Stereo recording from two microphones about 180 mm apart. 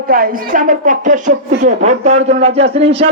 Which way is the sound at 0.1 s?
50° right (ahead or behind).